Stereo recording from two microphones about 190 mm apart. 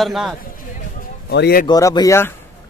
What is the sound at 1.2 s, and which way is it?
Speech, 60° left (ahead or behind).